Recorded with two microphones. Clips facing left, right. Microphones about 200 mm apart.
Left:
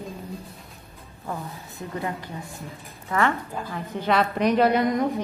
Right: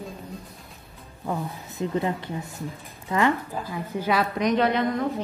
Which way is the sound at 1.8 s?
20° right (ahead or behind).